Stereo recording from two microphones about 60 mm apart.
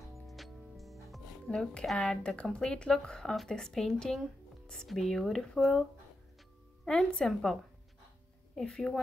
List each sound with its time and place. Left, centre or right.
0.3 s music: centre
1.5 s speech: centre
6.8 s music: centre
7.2 s speech: centre
8.5 s speech: centre